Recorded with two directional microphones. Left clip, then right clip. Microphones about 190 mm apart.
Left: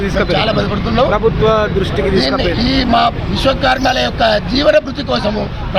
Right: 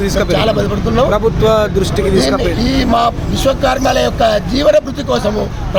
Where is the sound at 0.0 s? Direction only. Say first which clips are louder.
Right 1 dB; 20° right (ahead or behind).